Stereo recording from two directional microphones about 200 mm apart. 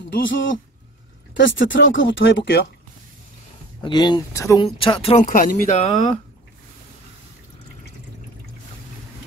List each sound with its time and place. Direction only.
0.1 s speech: 65° left (ahead or behind)
3.8 s speech: 20° left (ahead or behind)
4.6 s speech: 25° left (ahead or behind)